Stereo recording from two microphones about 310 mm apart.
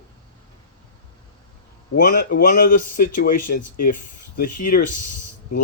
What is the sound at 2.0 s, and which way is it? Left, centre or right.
Speech, left.